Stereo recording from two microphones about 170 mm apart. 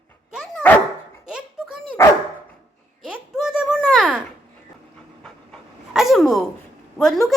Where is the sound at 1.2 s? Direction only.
5° right (ahead or behind).